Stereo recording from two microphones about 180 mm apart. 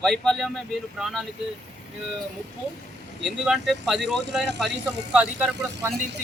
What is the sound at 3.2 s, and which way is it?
Speech, centre (ahead or behind).